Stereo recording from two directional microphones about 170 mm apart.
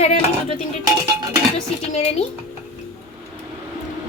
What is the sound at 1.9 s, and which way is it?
Speech, 40° left (ahead or behind).